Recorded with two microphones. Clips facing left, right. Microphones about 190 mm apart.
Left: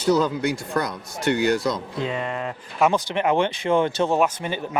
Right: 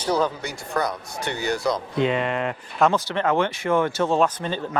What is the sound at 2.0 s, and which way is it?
Speech, 80° right.